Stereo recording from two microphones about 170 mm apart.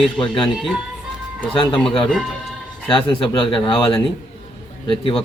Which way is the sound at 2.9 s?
30° left (ahead or behind).